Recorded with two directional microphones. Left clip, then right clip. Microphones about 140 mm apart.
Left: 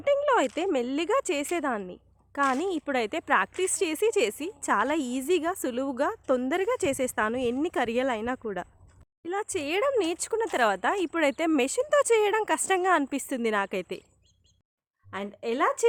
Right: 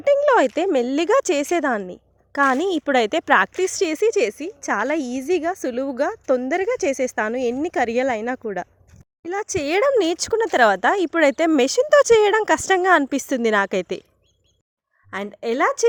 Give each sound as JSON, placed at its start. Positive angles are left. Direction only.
{"t": 0.0, "sound": "speech", "side_deg": -35}
{"t": 3.7, "sound": "a woman's voice", "side_deg": -30}
{"t": 9.6, "sound": "speech", "side_deg": -45}
{"t": 15.1, "sound": "speech", "side_deg": -50}